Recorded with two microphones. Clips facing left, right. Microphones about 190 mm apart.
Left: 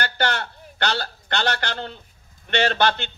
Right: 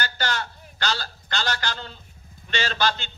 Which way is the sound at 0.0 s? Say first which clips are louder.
Left 4 dB; 60° left (ahead or behind).